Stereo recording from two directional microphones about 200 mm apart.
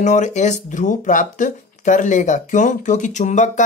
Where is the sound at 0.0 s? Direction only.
35° left (ahead or behind).